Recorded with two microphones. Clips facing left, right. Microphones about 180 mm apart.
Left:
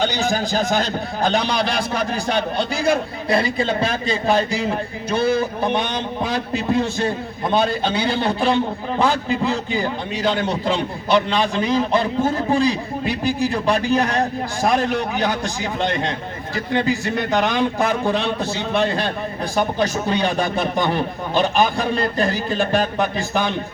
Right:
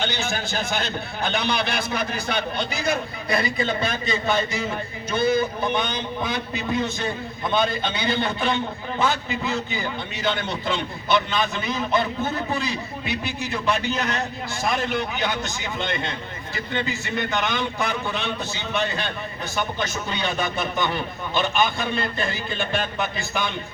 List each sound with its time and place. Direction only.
0.0 s a man's voice: 35° left (ahead or behind)